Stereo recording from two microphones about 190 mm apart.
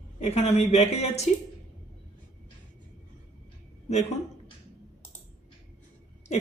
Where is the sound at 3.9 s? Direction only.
35° left (ahead or behind).